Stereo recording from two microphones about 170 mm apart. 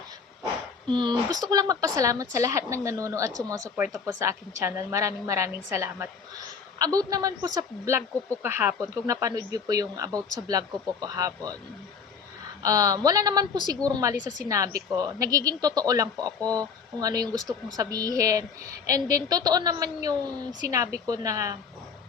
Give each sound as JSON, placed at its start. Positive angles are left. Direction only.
{"t": 0.9, "sound": "speech", "side_deg": -30}
{"t": 12.6, "sound": "speech", "side_deg": -20}